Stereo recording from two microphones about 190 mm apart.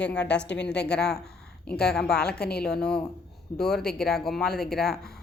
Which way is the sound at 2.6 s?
5° left (ahead or behind).